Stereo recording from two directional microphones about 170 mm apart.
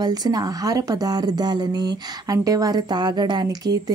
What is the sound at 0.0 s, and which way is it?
Speech, 25° right (ahead or behind).